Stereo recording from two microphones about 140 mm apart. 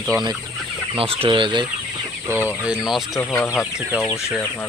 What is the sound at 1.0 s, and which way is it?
Speech, 40° right (ahead or behind).